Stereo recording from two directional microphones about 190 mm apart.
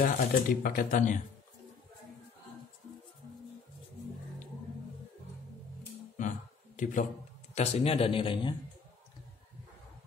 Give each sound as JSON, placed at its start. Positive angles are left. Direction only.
{"t": 0.0, "sound": "speech", "side_deg": 45}
{"t": 6.8, "sound": "a man's voice", "side_deg": 40}
{"t": 7.5, "sound": "speech", "side_deg": 30}